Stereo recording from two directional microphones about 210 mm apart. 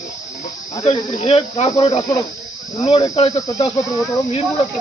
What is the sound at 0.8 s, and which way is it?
Speech, 30° left (ahead or behind).